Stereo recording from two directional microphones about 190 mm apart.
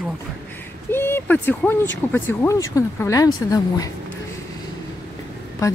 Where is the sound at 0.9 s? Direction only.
10° left (ahead or behind).